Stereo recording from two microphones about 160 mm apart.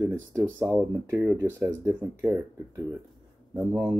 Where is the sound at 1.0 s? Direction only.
10° right (ahead or behind).